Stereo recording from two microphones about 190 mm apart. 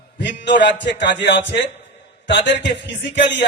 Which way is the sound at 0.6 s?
65° left (ahead or behind).